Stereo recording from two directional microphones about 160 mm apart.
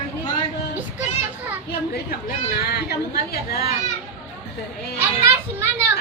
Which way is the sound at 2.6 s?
75° left (ahead or behind).